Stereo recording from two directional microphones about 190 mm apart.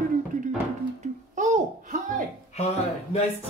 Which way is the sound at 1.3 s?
40° right (ahead or behind).